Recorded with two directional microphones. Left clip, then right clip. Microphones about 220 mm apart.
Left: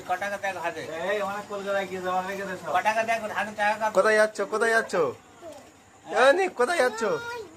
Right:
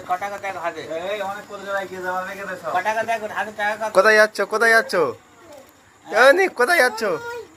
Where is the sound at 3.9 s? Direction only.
15° right (ahead or behind).